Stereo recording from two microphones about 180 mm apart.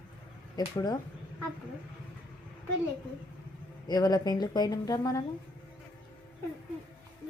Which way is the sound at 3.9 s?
20° left (ahead or behind).